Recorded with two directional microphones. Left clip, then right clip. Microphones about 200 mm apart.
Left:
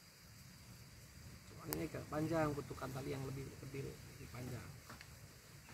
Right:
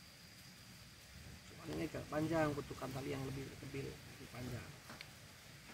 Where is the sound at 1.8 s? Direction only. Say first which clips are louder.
Right 2 dB; 10° right (ahead or behind).